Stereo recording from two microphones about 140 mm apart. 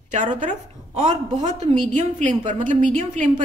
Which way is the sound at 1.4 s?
55° right (ahead or behind).